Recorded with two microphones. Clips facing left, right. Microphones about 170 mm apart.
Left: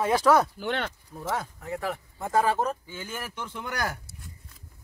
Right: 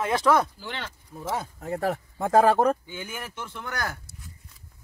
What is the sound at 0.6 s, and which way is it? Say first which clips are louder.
Speech: left 7 dB; 60° left (ahead or behind).